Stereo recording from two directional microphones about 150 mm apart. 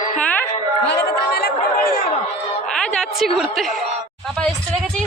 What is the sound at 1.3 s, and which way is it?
Chatter, 90° left.